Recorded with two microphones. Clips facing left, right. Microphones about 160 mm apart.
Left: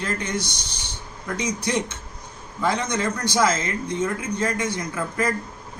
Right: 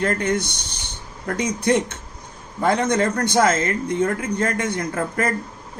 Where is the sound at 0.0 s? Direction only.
55° right (ahead or behind).